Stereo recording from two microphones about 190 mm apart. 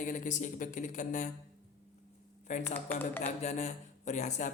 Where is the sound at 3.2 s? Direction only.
35° left (ahead or behind).